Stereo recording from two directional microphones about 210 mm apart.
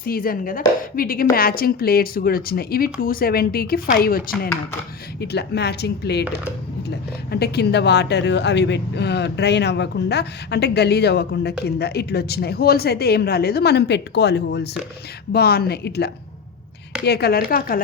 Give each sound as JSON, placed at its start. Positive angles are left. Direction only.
{"t": 0.0, "sound": "speech", "side_deg": 45}
{"t": 5.2, "sound": "speech", "side_deg": 50}
{"t": 7.3, "sound": "speech", "side_deg": 50}